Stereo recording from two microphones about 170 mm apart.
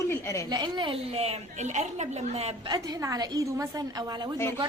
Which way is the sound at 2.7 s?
20° right (ahead or behind).